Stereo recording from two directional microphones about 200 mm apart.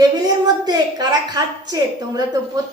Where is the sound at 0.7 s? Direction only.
20° right (ahead or behind).